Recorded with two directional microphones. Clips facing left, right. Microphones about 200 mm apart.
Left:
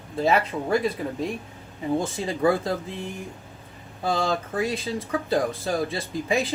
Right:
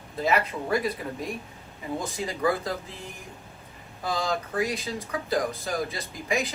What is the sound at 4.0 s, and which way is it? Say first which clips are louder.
Speech: left 4 dB; 30° left (ahead or behind).